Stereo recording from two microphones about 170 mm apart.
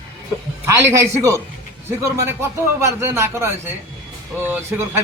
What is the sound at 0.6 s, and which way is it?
A man's voice, 15° right (ahead or behind).